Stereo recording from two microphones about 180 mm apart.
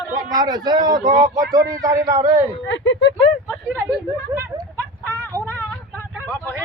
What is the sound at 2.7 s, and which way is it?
Speech, 85° left.